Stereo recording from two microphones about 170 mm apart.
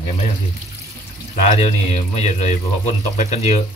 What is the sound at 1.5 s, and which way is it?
Speech, 40° left (ahead or behind).